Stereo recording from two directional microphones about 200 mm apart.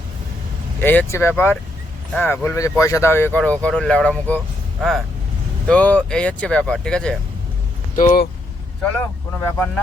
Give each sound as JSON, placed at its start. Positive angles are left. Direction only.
{"t": 0.8, "sound": "speech", "side_deg": 10}
{"t": 7.9, "sound": "speech", "side_deg": 40}
{"t": 8.8, "sound": "speech", "side_deg": 10}